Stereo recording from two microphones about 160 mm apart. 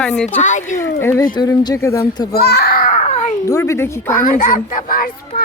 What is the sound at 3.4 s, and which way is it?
Speech, 20° left (ahead or behind).